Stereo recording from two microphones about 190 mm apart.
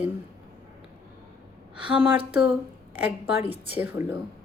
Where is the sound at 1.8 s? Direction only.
10° right (ahead or behind).